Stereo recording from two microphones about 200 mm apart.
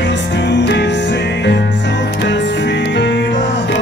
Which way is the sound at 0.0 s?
60° left (ahead or behind).